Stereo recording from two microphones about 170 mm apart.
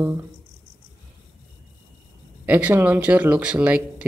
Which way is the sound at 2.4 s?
10° right (ahead or behind).